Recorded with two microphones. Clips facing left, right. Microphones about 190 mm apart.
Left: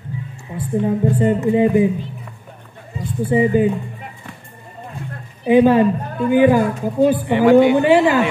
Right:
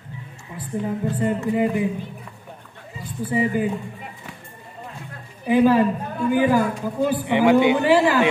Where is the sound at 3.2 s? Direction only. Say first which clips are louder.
Left 6 dB; 25° left (ahead or behind).